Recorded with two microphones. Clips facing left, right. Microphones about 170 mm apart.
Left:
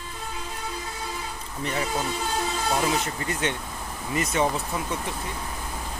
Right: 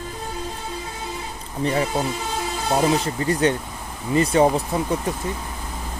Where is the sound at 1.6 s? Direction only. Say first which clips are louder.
Right 6 dB; 35° right (ahead or behind).